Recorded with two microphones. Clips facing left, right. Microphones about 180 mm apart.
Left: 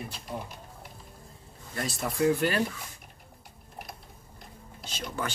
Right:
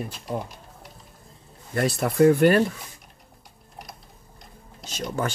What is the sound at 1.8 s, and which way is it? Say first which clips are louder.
Speech: right 9 dB; 65° right (ahead or behind).